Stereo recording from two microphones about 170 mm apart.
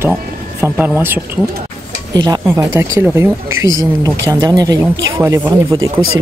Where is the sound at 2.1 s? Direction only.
25° right (ahead or behind).